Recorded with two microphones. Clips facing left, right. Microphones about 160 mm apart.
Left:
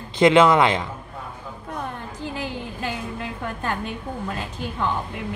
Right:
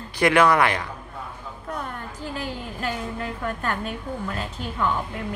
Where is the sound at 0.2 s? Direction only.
20° left (ahead or behind).